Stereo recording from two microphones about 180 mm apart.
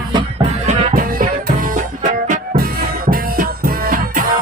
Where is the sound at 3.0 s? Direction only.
55° right (ahead or behind).